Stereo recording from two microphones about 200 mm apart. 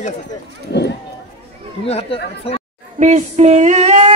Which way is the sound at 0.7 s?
55° left (ahead or behind).